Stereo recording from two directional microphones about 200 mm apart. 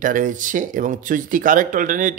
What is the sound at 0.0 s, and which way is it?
Speech, 40° right (ahead or behind).